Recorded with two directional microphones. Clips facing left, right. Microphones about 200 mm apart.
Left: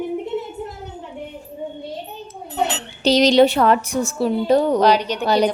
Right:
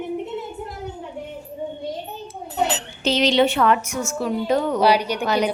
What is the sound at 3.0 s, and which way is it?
A woman's voice, 40° left (ahead or behind).